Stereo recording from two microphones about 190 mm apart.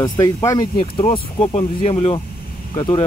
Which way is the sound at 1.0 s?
35° left (ahead or behind).